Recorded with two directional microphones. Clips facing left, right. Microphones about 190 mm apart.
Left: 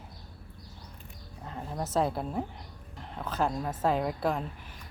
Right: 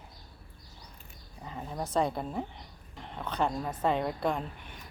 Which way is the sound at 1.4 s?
Centre (ahead or behind).